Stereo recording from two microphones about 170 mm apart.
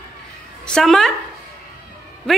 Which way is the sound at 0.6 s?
5° left (ahead or behind).